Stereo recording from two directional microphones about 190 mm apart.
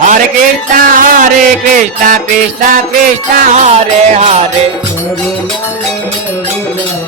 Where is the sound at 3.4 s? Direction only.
40° right (ahead or behind).